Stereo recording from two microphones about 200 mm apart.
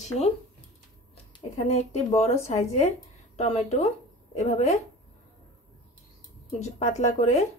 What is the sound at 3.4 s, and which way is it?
A woman's voice, 35° left (ahead or behind).